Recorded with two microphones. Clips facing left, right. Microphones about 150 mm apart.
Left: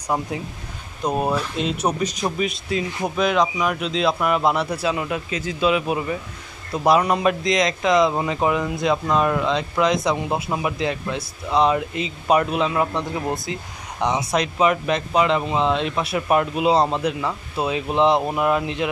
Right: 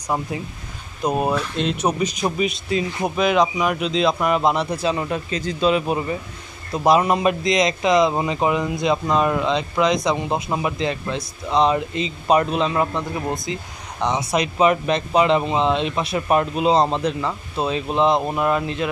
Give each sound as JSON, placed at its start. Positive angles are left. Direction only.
{"t": 1.0, "sound": "a man's voice", "side_deg": -5}
{"t": 13.5, "sound": "speech", "side_deg": 5}